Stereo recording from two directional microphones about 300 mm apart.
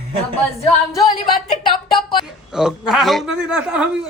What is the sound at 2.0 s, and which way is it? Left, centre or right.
A woman's voice, centre.